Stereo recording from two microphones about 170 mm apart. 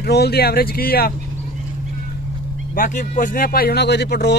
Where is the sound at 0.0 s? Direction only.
70° left (ahead or behind).